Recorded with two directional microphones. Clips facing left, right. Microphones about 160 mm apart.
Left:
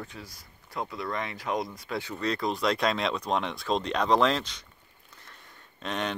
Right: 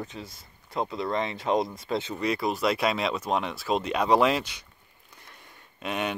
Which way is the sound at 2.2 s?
10° right (ahead or behind).